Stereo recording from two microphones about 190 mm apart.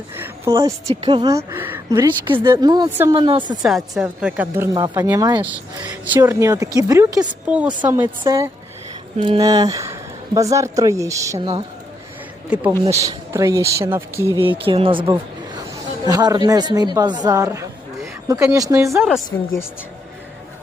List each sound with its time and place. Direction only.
0.5 s a woman's voice: 15° right (ahead or behind)
3.6 s speech: centre (ahead or behind); by 7.3 s 20° right (ahead or behind)
7.4 s a woman's voice: 5° right (ahead or behind)
7.7 s a woman's voice: 25° right (ahead or behind)
9.1 s speech: 30° right (ahead or behind)
9.4 s speech: 20° right (ahead or behind)
12.9 s speech: 15° right (ahead or behind)
14.4 s a woman's voice: 25° right (ahead or behind)
19.3 s a woman's voice: 15° left (ahead or behind)